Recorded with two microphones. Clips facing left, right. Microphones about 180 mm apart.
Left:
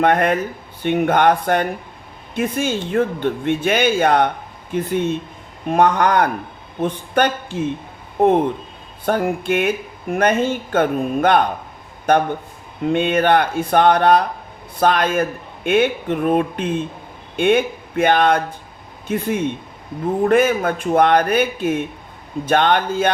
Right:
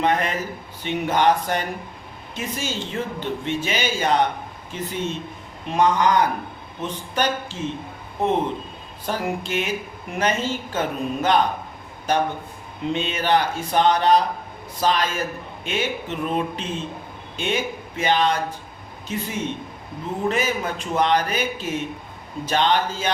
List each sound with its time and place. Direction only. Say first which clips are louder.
0.0 s speech: left 6 dB; 55° left (ahead or behind)